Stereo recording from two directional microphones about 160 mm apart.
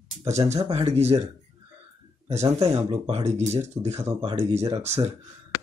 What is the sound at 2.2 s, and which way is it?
Speech, 40° right (ahead or behind).